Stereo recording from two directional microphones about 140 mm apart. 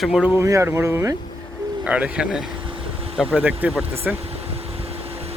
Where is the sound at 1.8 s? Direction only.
10° right (ahead or behind).